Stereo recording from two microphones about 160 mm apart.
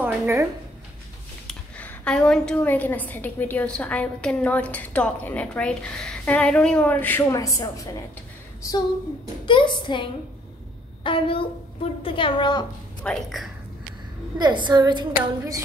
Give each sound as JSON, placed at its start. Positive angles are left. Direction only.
{"t": 0.0, "sound": "a sound", "side_deg": -15}
{"t": 1.5, "sound": "a woman's voice", "side_deg": 10}
{"t": 9.5, "sound": "a woman's voice", "side_deg": 30}
{"t": 11.1, "sound": "a woman's voice", "side_deg": 30}
{"t": 13.0, "sound": "a woman's voice", "side_deg": 0}
{"t": 14.4, "sound": "a woman's voice", "side_deg": -30}